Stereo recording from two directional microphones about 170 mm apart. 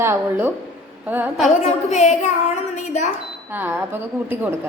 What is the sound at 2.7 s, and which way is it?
Cash register, 45° left (ahead or behind).